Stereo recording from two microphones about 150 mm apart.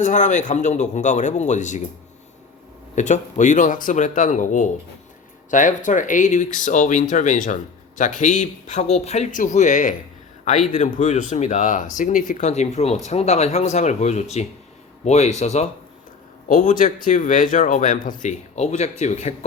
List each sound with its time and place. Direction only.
0.0 s speech: 55° left (ahead or behind)
2.9 s speech: 55° left (ahead or behind)
16.5 s speech: 60° left (ahead or behind)